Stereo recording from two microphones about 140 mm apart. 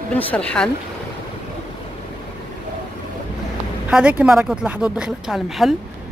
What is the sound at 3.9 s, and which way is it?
Speech, 5° right (ahead or behind).